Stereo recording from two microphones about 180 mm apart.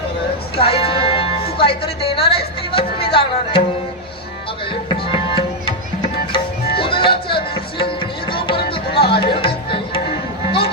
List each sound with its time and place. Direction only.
0.5 s music: 30° left (ahead or behind)
2.2 s speech: 60° left (ahead or behind)
2.7 s music: 30° left (ahead or behind)
5.1 s music: 30° left (ahead or behind)